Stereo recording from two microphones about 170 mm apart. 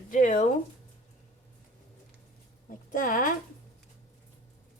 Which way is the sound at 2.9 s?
50° left (ahead or behind).